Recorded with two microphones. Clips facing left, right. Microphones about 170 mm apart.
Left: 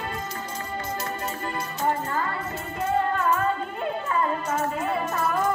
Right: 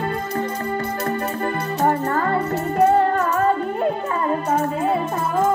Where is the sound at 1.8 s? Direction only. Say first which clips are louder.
Right 6 dB; 55° right (ahead or behind).